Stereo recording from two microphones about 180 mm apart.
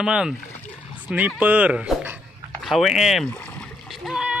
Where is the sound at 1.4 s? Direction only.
10° right (ahead or behind).